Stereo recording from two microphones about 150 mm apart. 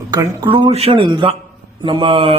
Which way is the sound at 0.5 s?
40° right (ahead or behind).